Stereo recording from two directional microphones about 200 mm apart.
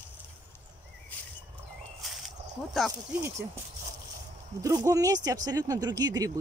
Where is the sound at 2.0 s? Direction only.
Centre (ahead or behind).